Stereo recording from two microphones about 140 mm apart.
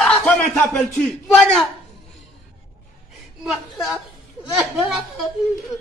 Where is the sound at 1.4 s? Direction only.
5° left (ahead or behind).